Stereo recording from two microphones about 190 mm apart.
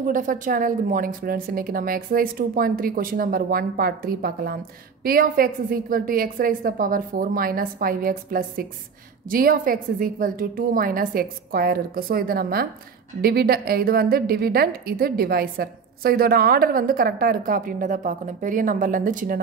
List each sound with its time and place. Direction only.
0.0 s a woman's voice: 45° right (ahead or behind)